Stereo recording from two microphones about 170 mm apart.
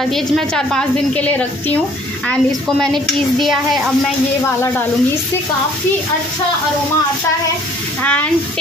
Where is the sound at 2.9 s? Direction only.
Centre (ahead or behind).